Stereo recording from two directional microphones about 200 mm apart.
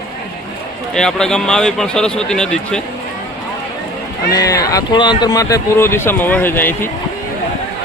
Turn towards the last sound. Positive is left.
turn(degrees=10)  # may be behind; listen again after turning